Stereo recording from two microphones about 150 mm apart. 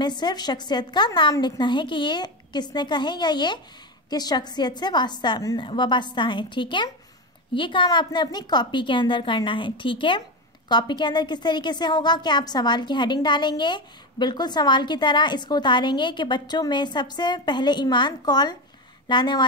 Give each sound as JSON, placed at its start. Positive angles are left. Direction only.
{"t": 0.0, "sound": "a woman's voice", "side_deg": 30}